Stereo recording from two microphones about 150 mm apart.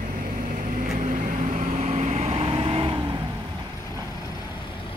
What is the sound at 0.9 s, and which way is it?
Vehicle, 60° right (ahead or behind).